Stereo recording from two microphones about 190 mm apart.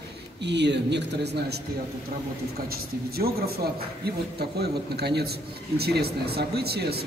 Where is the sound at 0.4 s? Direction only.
65° right (ahead or behind).